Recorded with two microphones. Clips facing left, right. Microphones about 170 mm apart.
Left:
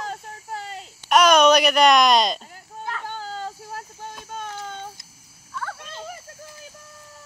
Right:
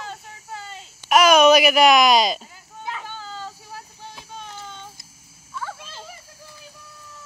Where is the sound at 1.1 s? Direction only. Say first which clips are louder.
Right 1 dB; 5° right (ahead or behind).